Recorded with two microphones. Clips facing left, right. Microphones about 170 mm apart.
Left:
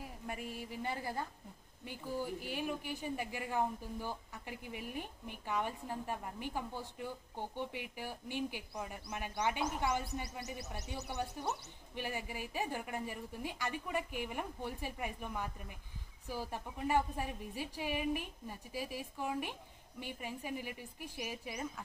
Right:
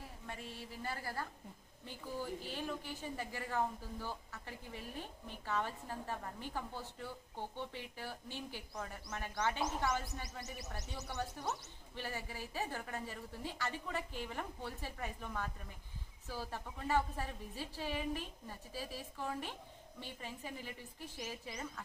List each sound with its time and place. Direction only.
0.8 s a woman's voice: 20° left (ahead or behind)